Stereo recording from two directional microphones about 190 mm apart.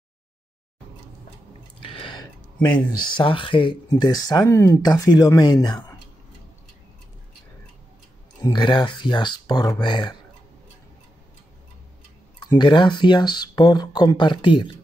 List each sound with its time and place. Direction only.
1.9 s a sound: 25° left (ahead or behind)
3.0 s speech: 25° left (ahead or behind)
8.4 s speech: 20° left (ahead or behind)
12.4 s speech: 25° left (ahead or behind)